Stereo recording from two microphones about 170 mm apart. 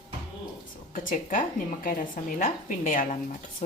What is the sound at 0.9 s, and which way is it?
A woman's voice, 50° left (ahead or behind).